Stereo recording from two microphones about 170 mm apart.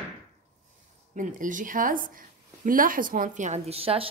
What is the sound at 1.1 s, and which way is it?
Speech, 50° right (ahead or behind).